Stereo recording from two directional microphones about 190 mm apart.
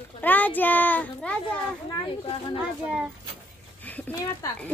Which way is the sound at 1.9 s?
25° left (ahead or behind).